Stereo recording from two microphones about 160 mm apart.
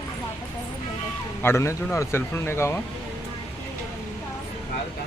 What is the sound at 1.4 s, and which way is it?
Speech, 15° left (ahead or behind).